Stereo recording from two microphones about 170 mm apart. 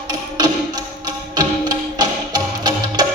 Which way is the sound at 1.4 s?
25° right (ahead or behind).